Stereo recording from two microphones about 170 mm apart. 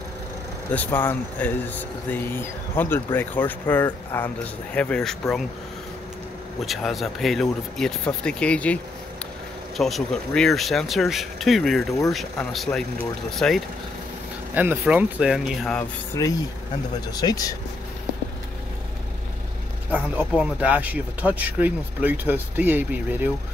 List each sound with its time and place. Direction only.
0.7 s speech: 10° left (ahead or behind)
6.6 s speech: centre (ahead or behind)
9.8 s speech: centre (ahead or behind)
14.5 s speech: 10° right (ahead or behind)
17.1 s speech: 20° left (ahead or behind)
19.9 s speech: 10° right (ahead or behind)